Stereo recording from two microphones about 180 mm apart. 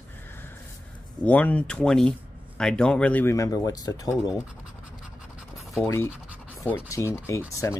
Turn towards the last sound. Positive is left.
turn(degrees=15)  # may be behind; listen again after turning